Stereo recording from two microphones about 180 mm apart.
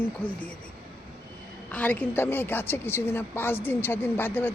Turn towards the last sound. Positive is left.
turn(degrees=10)  # may be behind; listen again after turning